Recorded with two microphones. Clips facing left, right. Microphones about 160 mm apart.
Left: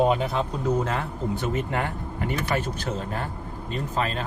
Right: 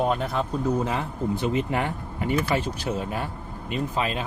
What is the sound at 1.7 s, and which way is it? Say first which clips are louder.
Speech: right 1 dB; 20° right (ahead or behind).